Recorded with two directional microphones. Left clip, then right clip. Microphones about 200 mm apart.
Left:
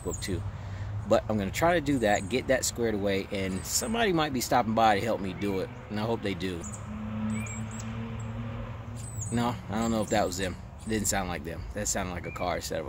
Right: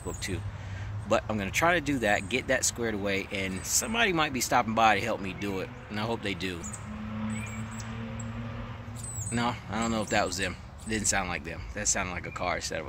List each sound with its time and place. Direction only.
0.2 s speech: 20° left (ahead or behind)
9.3 s speech: 20° left (ahead or behind)